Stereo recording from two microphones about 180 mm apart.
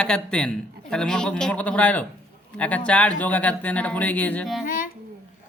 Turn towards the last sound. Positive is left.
turn(degrees=50)  # may be behind; listen again after turning